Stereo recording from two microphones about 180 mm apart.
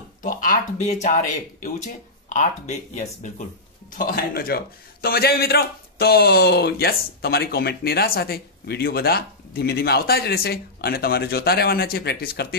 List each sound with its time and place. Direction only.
0.2 s speech: 50° left (ahead or behind)
4.0 s speech: 55° left (ahead or behind)